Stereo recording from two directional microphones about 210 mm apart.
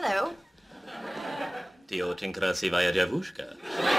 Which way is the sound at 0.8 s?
Centre (ahead or behind).